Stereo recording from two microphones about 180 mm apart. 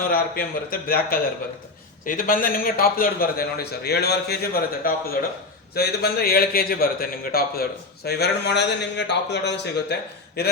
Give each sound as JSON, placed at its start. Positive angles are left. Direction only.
{"t": 0.1, "sound": "a man's voice", "side_deg": 55}
{"t": 4.8, "sound": "a man's voice", "side_deg": 55}